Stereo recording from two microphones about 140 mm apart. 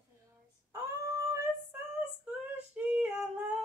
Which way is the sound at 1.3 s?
20° right (ahead or behind).